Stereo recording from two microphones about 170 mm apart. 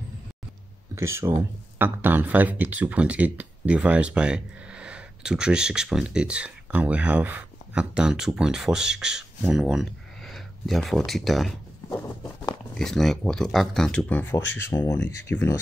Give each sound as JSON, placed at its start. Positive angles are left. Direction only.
{"t": 0.9, "sound": "speech", "side_deg": -15}
{"t": 12.7, "sound": "speech", "side_deg": 5}